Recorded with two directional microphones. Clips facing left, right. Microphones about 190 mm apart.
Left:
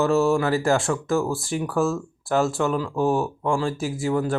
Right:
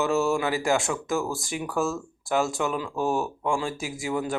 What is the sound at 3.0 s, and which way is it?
Speech, centre (ahead or behind).